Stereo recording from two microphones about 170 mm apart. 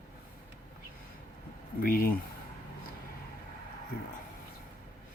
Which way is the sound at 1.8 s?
60° left (ahead or behind).